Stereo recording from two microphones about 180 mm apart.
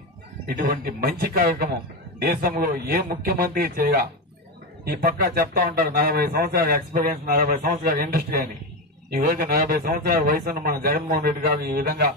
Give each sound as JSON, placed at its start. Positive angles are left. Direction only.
{"t": 0.5, "sound": "speech", "side_deg": -55}